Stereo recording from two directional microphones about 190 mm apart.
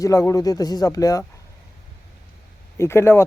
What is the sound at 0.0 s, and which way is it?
Speech, 15° left (ahead or behind).